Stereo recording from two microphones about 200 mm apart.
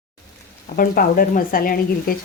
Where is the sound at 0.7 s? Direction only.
45° left (ahead or behind).